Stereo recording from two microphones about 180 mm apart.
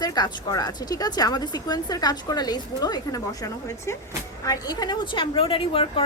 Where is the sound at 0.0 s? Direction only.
20° left (ahead or behind).